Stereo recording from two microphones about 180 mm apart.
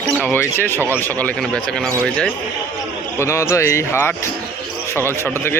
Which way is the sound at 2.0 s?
5° left (ahead or behind).